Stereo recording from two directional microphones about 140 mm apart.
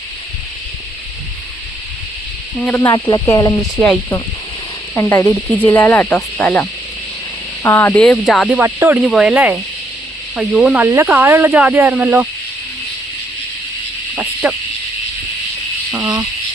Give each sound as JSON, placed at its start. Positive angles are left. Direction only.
{"t": 2.6, "sound": "speech", "side_deg": 10}
{"t": 2.8, "sound": "speech", "side_deg": 30}
{"t": 4.9, "sound": "speech", "side_deg": 20}
{"t": 8.4, "sound": "speech", "side_deg": -10}
{"t": 14.4, "sound": "speech", "side_deg": -5}